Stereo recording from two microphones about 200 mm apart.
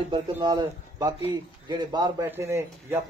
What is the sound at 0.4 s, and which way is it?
A man's voice, 20° right (ahead or behind).